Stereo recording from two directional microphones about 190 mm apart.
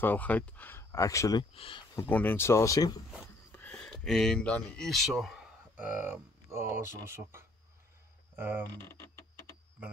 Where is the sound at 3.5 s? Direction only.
5° left (ahead or behind); by 8.6 s 10° right (ahead or behind).